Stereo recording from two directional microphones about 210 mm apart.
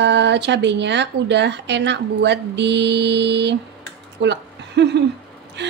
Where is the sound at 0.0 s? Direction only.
55° right (ahead or behind).